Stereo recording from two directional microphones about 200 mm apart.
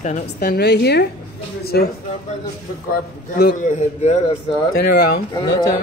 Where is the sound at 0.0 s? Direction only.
40° left (ahead or behind).